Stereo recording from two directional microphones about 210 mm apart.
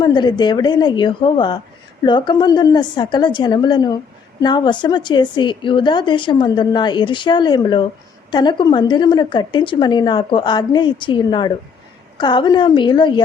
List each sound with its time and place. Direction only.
0.0 s a woman's voice: 20° left (ahead or behind)